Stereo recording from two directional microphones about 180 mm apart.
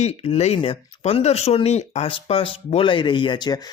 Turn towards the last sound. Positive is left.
turn(degrees=25)  # may be behind; listen again after turning